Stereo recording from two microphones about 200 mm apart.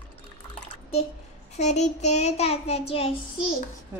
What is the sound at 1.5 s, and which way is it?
A child's voice, 35° left (ahead or behind).